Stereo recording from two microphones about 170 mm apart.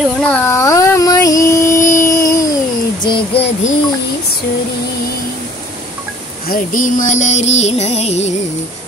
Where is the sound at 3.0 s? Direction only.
30° left (ahead or behind).